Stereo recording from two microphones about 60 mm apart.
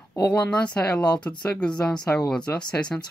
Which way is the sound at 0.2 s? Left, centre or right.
Centre.